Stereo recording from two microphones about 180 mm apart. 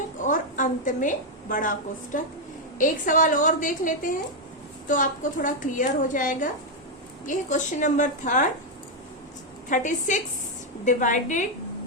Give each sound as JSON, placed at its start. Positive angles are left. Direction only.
{"t": 0.2, "sound": "a sound", "side_deg": 45}
{"t": 2.7, "sound": "a woman's voice", "side_deg": 45}
{"t": 9.6, "sound": "a woman's voice", "side_deg": 45}